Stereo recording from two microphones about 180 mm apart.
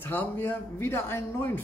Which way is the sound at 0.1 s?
10° left (ahead or behind).